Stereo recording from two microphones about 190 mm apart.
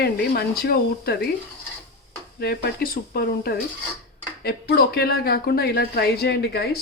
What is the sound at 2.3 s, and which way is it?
Speech, 55° left (ahead or behind).